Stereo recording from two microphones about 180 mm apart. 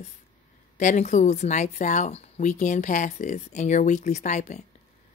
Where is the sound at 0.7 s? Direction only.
45° left (ahead or behind).